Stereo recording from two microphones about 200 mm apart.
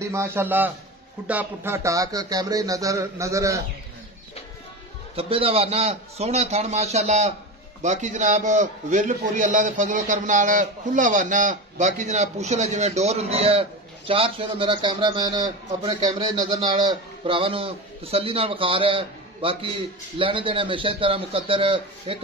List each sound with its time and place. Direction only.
0.0 s speech: 15° right (ahead or behind)
5.1 s a man's voice: 30° right (ahead or behind)